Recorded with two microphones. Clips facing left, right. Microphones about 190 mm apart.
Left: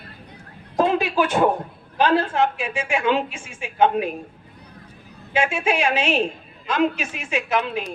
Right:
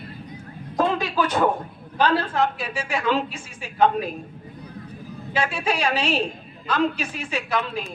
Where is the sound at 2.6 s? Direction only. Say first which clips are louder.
Left 3 dB; 35° right (ahead or behind).